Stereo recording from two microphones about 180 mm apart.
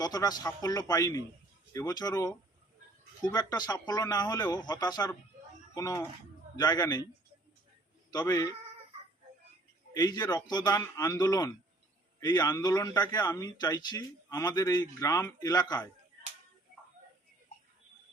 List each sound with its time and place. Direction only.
0.0 s a man's voice: 20° left (ahead or behind)
8.2 s speech: 15° left (ahead or behind)
9.9 s a man's voice: 20° left (ahead or behind)